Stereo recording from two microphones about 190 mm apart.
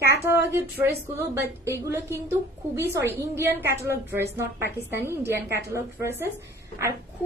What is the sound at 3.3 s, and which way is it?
A woman's voice, 10° right (ahead or behind).